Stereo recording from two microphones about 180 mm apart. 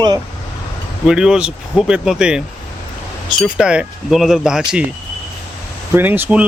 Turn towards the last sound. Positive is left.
turn(degrees=-10)  # may be behind; listen again after turning